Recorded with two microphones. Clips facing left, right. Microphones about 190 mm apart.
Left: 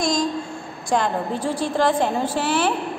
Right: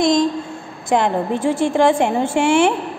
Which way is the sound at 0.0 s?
25° right (ahead or behind).